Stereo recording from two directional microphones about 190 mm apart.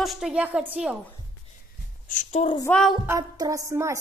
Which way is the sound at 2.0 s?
40° left (ahead or behind).